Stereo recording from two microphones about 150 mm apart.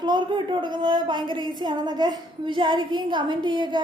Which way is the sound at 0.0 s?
30° right (ahead or behind).